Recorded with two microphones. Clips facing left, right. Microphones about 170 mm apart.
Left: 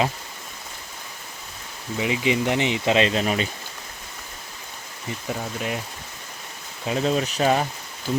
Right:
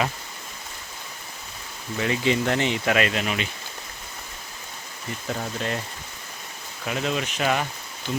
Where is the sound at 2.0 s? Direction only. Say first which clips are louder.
Left 1 dB; 15° left (ahead or behind); by 3.4 s 35° left (ahead or behind).